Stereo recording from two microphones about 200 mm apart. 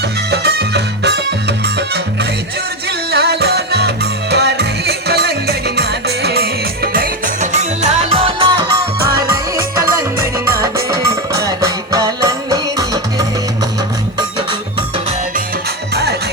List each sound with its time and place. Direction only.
0.3 s music: 55° right (ahead or behind)
3.1 s music: 55° right (ahead or behind)
7.5 s music: 35° right (ahead or behind)
10.8 s music: 15° right (ahead or behind)